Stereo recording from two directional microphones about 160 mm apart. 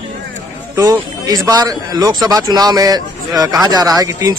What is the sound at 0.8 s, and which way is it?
Speech, 20° right (ahead or behind).